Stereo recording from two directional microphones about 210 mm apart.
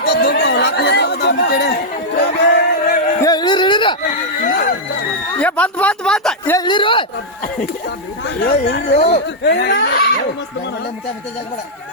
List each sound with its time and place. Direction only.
0.0 s chatter: 50° left (ahead or behind)
2.2 s music: 50° left (ahead or behind)
3.2 s a sound: 20° left (ahead or behind)
4.4 s a sound: 40° left (ahead or behind)
5.4 s speech: 5° left (ahead or behind)
6.6 s speech: 20° left (ahead or behind)
8.4 s speech: 55° left (ahead or behind)